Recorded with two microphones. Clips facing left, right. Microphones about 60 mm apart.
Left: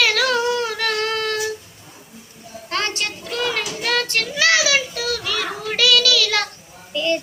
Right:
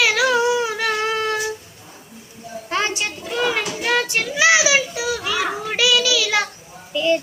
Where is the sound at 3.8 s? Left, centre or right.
Centre.